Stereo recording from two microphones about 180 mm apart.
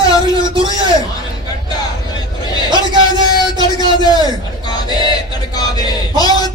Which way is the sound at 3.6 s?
20° left (ahead or behind).